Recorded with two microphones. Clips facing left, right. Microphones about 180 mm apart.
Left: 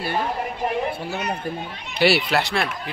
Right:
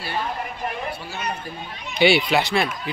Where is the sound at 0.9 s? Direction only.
55° left (ahead or behind).